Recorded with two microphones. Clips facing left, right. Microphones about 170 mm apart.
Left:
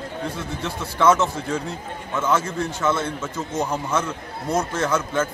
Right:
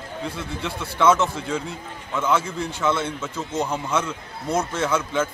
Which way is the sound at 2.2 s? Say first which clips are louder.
Left 1 dB; 10° right (ahead or behind).